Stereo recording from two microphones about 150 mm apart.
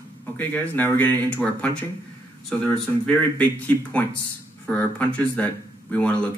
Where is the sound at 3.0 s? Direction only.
10° left (ahead or behind).